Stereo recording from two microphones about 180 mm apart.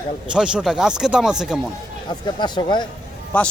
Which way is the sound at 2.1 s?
25° left (ahead or behind).